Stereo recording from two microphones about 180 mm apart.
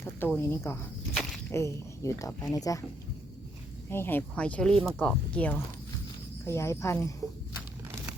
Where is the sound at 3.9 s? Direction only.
10° left (ahead or behind).